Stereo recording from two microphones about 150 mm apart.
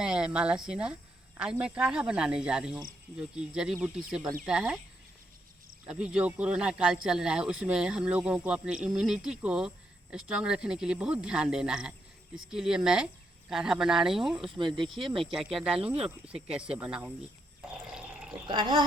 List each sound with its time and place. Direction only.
0.0 s speech: 5° right (ahead or behind)
5.9 s speech: 5° right (ahead or behind)
17.9 s water: 5° right (ahead or behind)
18.4 s speech: 30° right (ahead or behind)